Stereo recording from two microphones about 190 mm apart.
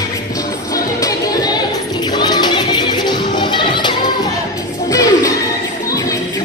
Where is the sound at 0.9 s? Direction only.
20° left (ahead or behind).